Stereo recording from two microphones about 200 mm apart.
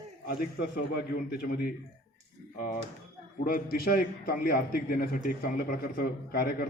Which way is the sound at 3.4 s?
45° left (ahead or behind).